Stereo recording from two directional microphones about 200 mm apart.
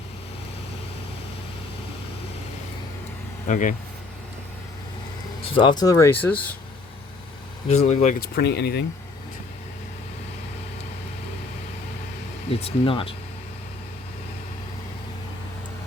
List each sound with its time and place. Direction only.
3.5 s speech: 40° left (ahead or behind)
5.5 s speech: 25° left (ahead or behind); by 6.4 s 10° left (ahead or behind)
7.7 s speech: 35° left (ahead or behind)
8.4 s speech: 55° left (ahead or behind)
12.5 s speech: 30° left (ahead or behind)